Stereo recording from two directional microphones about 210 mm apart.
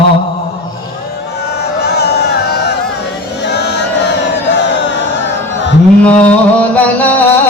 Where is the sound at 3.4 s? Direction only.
55° left (ahead or behind).